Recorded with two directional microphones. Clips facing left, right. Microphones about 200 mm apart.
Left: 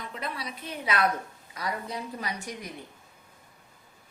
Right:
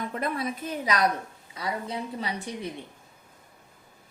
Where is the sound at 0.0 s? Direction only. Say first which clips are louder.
Right 7 dB; 50° right (ahead or behind).